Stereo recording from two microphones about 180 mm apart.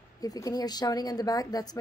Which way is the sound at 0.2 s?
20° left (ahead or behind).